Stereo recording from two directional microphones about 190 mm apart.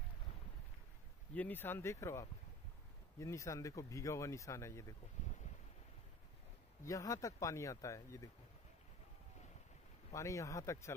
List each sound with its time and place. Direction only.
1.3 s speech: 10° left (ahead or behind)
6.8 s speech: 15° left (ahead or behind)
10.1 s speech: 15° left (ahead or behind)